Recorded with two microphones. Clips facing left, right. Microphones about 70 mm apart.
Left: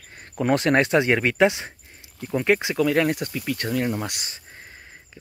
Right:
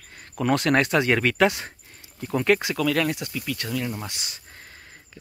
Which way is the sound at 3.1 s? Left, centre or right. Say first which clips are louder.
Left 3 dB; left.